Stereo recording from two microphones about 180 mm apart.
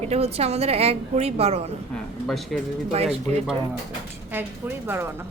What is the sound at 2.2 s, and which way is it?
Speech, centre (ahead or behind).